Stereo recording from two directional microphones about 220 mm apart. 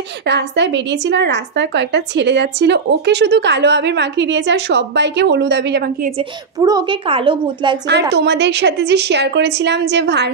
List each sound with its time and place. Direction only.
0.2 s a woman's voice: 50° right (ahead or behind)
6.6 s a woman's voice: 15° right (ahead or behind)
8.1 s a woman's voice: 50° right (ahead or behind)